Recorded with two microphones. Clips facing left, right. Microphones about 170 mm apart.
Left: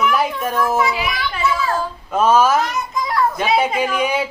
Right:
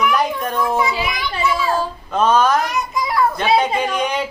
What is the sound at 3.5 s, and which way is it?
Speech, 5° left (ahead or behind).